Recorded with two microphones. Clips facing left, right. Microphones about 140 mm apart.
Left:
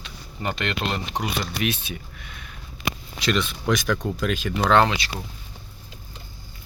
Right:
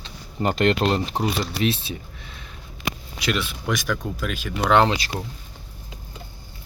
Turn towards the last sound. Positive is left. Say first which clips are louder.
# right 3 dB
turn(degrees=-40)  # may be behind; listen again after turning